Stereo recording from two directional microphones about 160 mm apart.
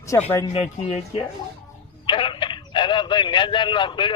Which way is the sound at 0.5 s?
40° left (ahead or behind).